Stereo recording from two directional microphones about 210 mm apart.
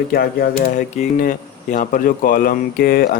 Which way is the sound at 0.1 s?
45° left (ahead or behind).